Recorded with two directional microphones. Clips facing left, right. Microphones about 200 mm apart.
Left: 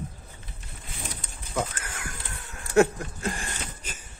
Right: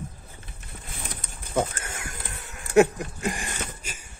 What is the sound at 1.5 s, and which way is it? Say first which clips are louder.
Horse: right 4 dB; 25° right (ahead or behind).